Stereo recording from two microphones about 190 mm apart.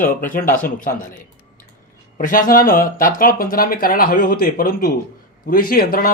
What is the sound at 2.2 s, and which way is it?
Speech, 45° left (ahead or behind).